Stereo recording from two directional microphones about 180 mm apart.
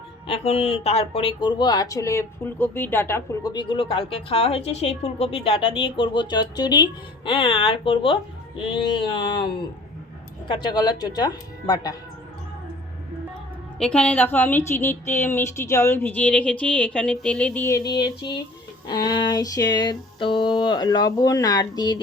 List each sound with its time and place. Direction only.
0.3 s speech: 35° left (ahead or behind)
13.7 s a woman's voice: 5° left (ahead or behind); by 22.0 s 25° left (ahead or behind)